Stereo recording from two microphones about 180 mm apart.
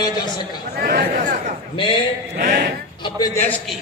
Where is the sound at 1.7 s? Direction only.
30° left (ahead or behind).